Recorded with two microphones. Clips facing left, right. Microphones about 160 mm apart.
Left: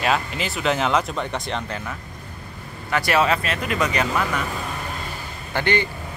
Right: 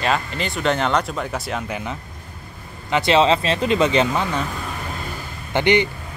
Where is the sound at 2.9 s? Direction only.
20° right (ahead or behind).